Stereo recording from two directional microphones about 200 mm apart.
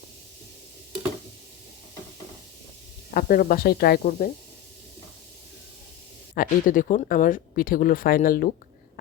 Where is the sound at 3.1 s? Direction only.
45° left (ahead or behind).